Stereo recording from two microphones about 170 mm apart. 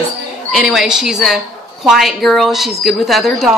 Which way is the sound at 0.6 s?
Centre (ahead or behind).